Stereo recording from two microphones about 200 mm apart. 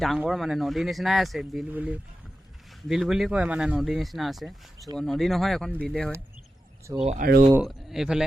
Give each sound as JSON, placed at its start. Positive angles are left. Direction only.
{"t": 0.0, "sound": "speech", "side_deg": 0}
{"t": 7.0, "sound": "speech", "side_deg": -35}
{"t": 7.6, "sound": "speech", "side_deg": 0}